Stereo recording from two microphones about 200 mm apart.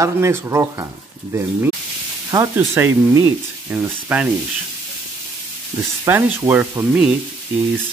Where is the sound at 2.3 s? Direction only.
15° right (ahead or behind).